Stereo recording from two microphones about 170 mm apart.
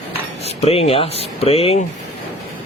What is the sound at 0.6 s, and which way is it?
Speech, 35° left (ahead or behind).